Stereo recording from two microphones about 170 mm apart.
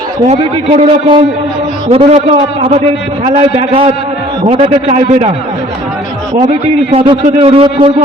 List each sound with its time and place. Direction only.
0.3 s a man's voice: 35° right (ahead or behind)
3.2 s a man's voice: 35° right (ahead or behind)
6.9 s a man's voice: 30° right (ahead or behind)